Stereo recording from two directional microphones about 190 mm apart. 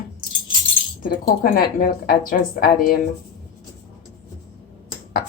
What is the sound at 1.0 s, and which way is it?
Speech, 50° left (ahead or behind).